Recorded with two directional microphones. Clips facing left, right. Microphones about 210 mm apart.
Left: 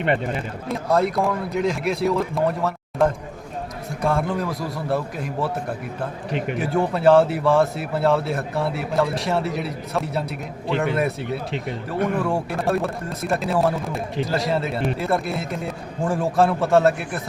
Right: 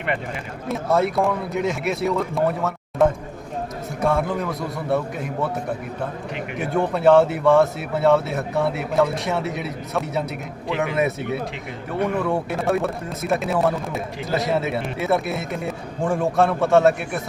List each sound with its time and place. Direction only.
0.7 s speech: centre (ahead or behind)
12.2 s speech: centre (ahead or behind)